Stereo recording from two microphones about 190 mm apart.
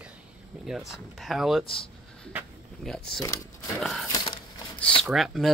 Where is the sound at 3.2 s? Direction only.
15° left (ahead or behind).